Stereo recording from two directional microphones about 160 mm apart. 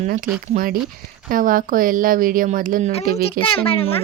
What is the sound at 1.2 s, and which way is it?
Speech, 60° right (ahead or behind).